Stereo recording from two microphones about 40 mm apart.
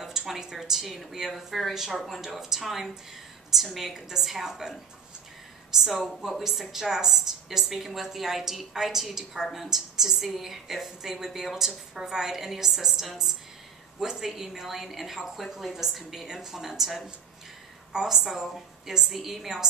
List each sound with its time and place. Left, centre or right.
0.0 s speech: centre
1.3 s a woman's voice: centre
5.8 s a woman's voice: centre